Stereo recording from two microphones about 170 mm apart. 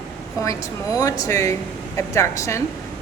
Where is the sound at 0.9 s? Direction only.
20° left (ahead or behind).